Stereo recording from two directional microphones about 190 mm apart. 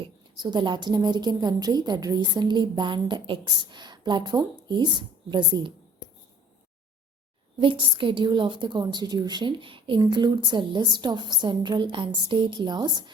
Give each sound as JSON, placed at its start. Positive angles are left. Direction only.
{"t": 0.3, "sound": "a woman's voice", "side_deg": -25}
{"t": 7.6, "sound": "a woman's voice", "side_deg": -25}